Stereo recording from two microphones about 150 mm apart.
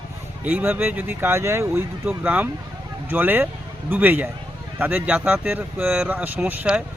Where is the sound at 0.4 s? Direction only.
15° right (ahead or behind).